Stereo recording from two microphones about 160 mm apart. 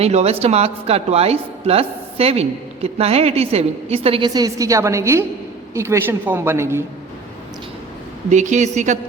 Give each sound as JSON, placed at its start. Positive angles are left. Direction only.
{"t": 0.0, "sound": "a woman's voice", "side_deg": -40}
{"t": 4.4, "sound": "a woman's voice", "side_deg": -20}
{"t": 8.3, "sound": "speech", "side_deg": -50}